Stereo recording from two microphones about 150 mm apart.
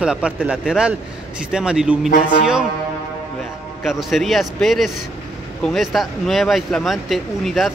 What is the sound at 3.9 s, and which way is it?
Speech, centre (ahead or behind).